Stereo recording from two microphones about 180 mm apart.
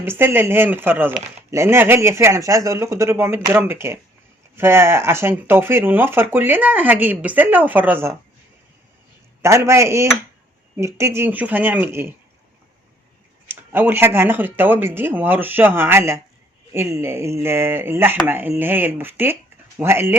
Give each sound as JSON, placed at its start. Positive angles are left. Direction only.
{"t": 0.0, "sound": "speech", "side_deg": -10}
{"t": 9.4, "sound": "speech", "side_deg": -15}
{"t": 13.5, "sound": "speech", "side_deg": -10}